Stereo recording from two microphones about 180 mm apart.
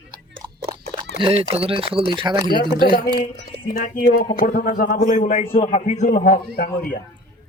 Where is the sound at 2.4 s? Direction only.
25° left (ahead or behind).